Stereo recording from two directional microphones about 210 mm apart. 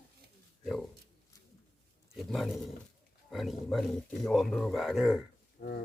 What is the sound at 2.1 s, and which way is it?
Speech, centre (ahead or behind).